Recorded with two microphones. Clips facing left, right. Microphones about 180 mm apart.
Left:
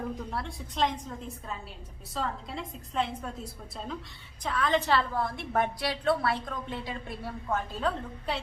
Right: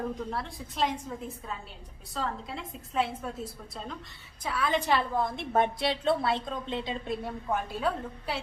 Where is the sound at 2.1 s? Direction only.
Centre (ahead or behind).